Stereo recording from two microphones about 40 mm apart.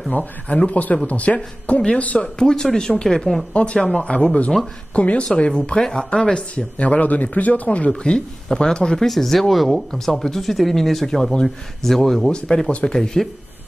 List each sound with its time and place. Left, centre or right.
0.1 s speech: left
2.2 s speech: centre
3.5 s speech: left
5.5 s speech: centre
6.5 s speech: left
8.0 s speech: left
12.3 s speech: left